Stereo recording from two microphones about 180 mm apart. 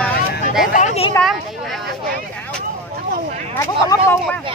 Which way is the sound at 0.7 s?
40° left (ahead or behind).